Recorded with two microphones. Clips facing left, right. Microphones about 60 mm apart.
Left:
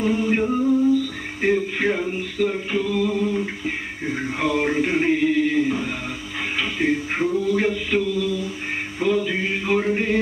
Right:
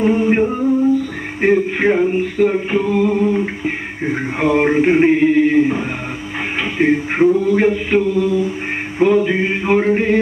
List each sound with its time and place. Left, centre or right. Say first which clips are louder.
0.0 s music: right 6 dB; right
1.4 s a capella: right 6 dB; right